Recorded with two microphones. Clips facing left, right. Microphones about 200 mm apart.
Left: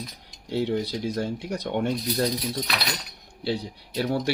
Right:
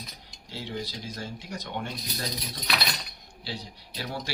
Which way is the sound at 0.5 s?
60° left (ahead or behind).